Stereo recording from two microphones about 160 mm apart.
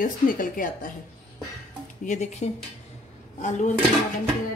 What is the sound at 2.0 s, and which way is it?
A woman's voice, 45° left (ahead or behind).